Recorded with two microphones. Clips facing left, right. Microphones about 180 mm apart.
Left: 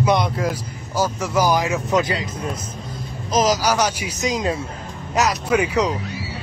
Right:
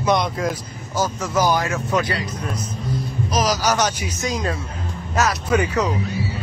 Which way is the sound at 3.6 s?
10° left (ahead or behind).